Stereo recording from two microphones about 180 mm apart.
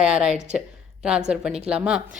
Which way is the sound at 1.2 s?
5° right (ahead or behind).